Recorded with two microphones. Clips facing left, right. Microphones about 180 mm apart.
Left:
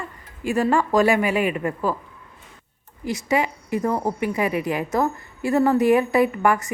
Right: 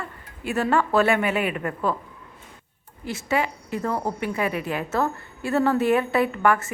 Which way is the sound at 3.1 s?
15° left (ahead or behind).